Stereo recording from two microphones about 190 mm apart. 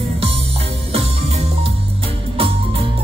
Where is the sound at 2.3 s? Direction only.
30° right (ahead or behind).